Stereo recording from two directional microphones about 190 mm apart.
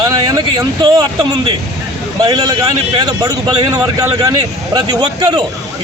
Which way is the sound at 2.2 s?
20° right (ahead or behind).